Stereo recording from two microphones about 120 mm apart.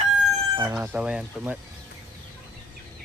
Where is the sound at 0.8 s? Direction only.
10° right (ahead or behind).